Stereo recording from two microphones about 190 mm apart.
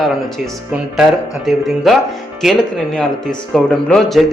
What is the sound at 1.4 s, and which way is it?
A man's voice, centre (ahead or behind).